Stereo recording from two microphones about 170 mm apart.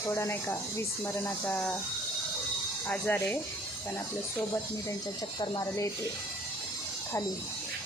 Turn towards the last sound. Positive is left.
turn(degrees=20)  # may be behind; listen again after turning